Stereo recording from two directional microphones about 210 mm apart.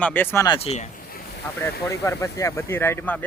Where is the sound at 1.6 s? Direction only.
15° left (ahead or behind).